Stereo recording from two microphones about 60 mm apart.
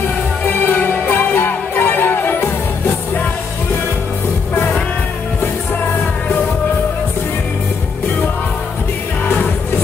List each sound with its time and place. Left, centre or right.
0.5 s music: left